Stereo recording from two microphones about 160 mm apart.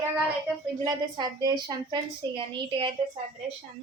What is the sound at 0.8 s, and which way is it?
A child's voice, 25° right (ahead or behind).